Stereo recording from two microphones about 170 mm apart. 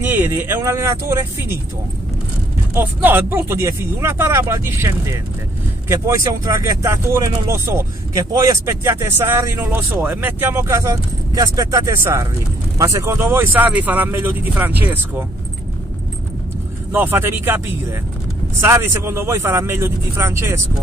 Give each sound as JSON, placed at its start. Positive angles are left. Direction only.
{"t": 0.0, "sound": "speech", "side_deg": -10}
{"t": 2.7, "sound": "speech", "side_deg": -10}
{"t": 16.9, "sound": "speech", "side_deg": -10}